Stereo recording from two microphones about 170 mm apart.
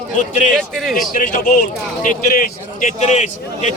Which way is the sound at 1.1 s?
50° left (ahead or behind).